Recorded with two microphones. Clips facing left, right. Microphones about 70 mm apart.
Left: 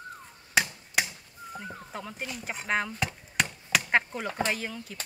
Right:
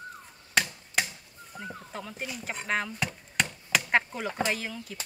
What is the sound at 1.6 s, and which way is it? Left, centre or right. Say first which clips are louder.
Speech: right 3 dB; centre.